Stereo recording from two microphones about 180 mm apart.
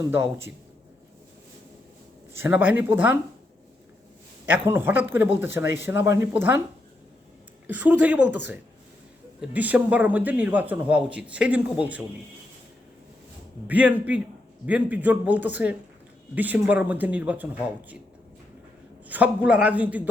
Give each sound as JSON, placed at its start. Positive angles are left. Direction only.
{"t": 0.0, "sound": "a man's voice", "side_deg": -15}
{"t": 2.3, "sound": "a man's voice", "side_deg": -10}
{"t": 4.5, "sound": "a man's voice", "side_deg": -10}
{"t": 7.7, "sound": "a man's voice", "side_deg": -10}
{"t": 9.4, "sound": "a man's voice", "side_deg": -10}
{"t": 13.7, "sound": "a man's voice", "side_deg": -10}
{"t": 19.0, "sound": "a man's voice", "side_deg": -10}